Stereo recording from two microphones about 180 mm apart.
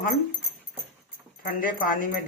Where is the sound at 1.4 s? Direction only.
55° left (ahead or behind).